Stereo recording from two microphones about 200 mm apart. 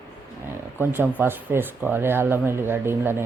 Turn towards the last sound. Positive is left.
turn(degrees=-10)  # may be behind; listen again after turning